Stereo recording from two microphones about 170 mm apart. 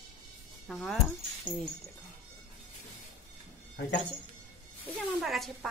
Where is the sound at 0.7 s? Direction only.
Centre (ahead or behind).